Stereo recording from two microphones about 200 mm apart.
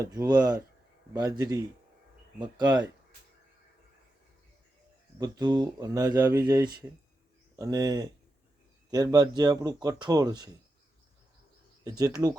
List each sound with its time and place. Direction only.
0.0 s a man's voice: 20° right (ahead or behind)
5.2 s a man's voice: 20° right (ahead or behind)
11.9 s speech: 15° right (ahead or behind)